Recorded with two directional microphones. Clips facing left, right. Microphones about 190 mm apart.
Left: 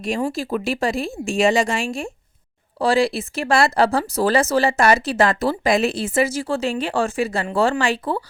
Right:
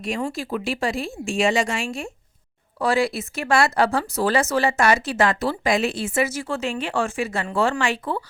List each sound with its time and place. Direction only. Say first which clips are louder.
0.3 s speech: left 3 dB; 40° left (ahead or behind)